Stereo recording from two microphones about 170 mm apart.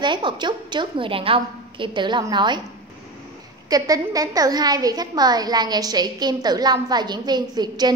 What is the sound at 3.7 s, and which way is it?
A woman's voice, 20° right (ahead or behind).